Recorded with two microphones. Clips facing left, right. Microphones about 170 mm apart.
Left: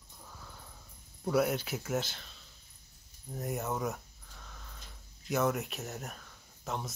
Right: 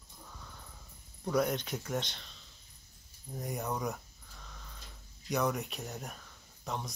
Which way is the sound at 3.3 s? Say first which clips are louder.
Left 1 dB; centre (ahead or behind).